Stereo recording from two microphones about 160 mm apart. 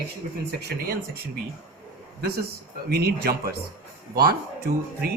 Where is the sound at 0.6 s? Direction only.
80° right.